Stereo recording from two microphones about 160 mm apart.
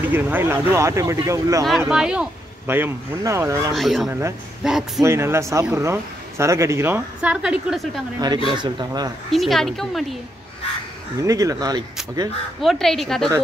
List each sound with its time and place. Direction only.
0.0 s speech: 10° right (ahead or behind)
1.9 s speech: 5° right (ahead or behind)
3.7 s speech: centre (ahead or behind)
5.0 s speech: 15° right (ahead or behind); by 8.0 s centre (ahead or behind)
8.5 s speech: 30° right (ahead or behind)
9.3 s speech: centre (ahead or behind)
11.2 s speech: 20° right (ahead or behind)
12.6 s speech: centre (ahead or behind)